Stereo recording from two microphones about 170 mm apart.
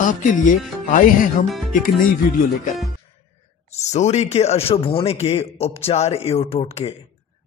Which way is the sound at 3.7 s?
40° left (ahead or behind).